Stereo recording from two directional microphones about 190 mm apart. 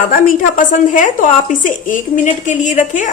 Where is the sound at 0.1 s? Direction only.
45° left (ahead or behind).